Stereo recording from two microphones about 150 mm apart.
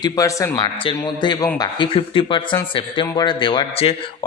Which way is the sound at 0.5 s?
35° left (ahead or behind).